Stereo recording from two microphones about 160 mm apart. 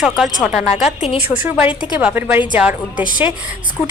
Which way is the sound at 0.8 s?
40° left (ahead or behind).